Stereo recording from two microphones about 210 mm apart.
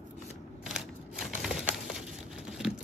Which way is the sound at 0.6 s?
Centre (ahead or behind).